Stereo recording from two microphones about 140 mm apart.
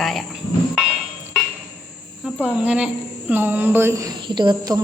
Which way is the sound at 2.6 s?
10° right (ahead or behind).